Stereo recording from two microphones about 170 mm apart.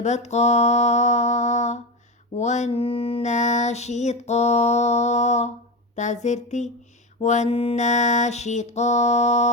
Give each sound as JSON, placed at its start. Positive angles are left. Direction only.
{"t": 0.0, "sound": "mantra", "side_deg": 40}